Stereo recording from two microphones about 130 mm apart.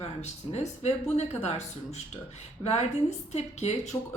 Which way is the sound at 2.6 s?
55° left (ahead or behind).